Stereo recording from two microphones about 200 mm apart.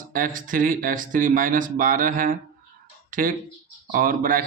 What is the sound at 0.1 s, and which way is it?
Speech, 40° right (ahead or behind).